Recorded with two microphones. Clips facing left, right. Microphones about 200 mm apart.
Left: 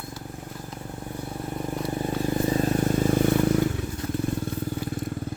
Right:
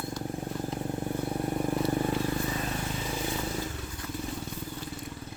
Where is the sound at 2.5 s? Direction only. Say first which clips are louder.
Left 11 dB; 45° left (ahead or behind); by 3.7 s 60° left (ahead or behind).